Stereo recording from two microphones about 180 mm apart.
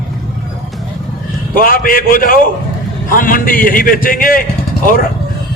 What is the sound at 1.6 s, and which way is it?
A man's voice, 50° left (ahead or behind).